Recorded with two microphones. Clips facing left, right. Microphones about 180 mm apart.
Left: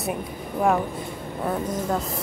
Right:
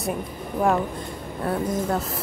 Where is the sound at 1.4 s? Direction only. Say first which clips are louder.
Right 2 dB; centre (ahead or behind).